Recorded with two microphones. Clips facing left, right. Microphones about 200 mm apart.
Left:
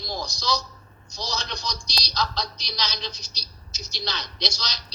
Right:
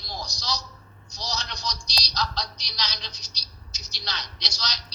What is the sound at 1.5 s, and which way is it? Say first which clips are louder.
Speech: left 1 dB; 50° left (ahead or behind).